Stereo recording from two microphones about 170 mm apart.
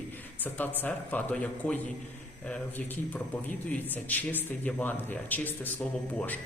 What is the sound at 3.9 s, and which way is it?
Speech, 10° left (ahead or behind).